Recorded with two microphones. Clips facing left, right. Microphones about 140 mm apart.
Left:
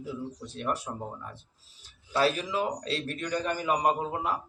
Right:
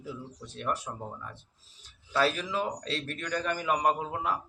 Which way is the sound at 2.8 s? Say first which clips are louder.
Left 3 dB; 35° left (ahead or behind).